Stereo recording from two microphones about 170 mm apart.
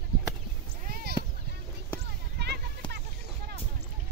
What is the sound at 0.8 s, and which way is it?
Clip-clop, 60° right (ahead or behind).